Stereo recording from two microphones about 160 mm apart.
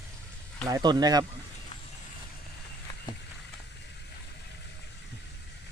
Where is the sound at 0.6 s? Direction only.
25° right (ahead or behind).